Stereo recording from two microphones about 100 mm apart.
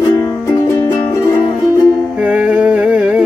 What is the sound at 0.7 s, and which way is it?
Music, 30° left (ahead or behind).